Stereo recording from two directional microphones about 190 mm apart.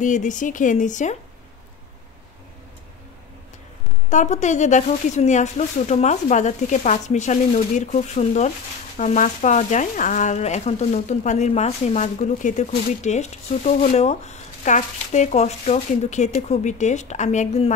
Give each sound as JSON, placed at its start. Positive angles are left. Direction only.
{"t": 0.0, "sound": "speech", "side_deg": 40}
{"t": 4.1, "sound": "speech", "side_deg": 40}